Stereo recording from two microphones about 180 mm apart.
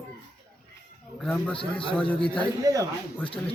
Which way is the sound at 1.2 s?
5° left (ahead or behind).